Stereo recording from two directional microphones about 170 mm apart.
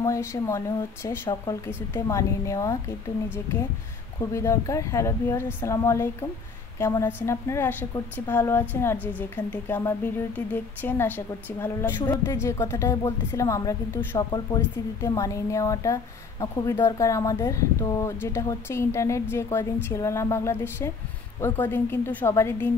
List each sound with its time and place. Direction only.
0.0 s speech: 15° left (ahead or behind)
4.2 s speech: 15° left (ahead or behind)